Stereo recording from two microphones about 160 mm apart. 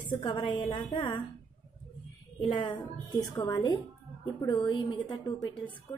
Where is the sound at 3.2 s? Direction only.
25° left (ahead or behind).